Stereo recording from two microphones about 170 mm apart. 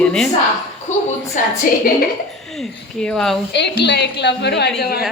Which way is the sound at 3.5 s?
80° left.